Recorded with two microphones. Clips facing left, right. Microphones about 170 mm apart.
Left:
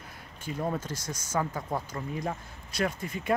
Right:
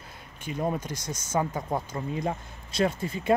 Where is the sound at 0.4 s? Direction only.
20° right (ahead or behind).